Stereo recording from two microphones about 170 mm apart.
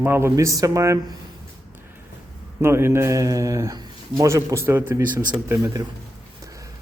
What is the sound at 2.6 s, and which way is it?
Speech, 15° right (ahead or behind).